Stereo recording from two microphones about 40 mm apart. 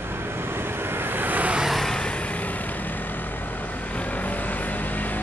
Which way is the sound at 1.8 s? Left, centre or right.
Centre.